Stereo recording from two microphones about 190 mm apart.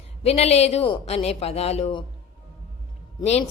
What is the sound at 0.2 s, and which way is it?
A woman's voice, 30° left (ahead or behind).